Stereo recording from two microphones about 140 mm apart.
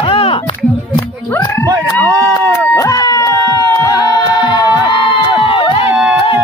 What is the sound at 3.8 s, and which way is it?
Singing, 25° left (ahead or behind).